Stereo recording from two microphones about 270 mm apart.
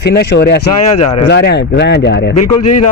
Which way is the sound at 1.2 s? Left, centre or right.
Left.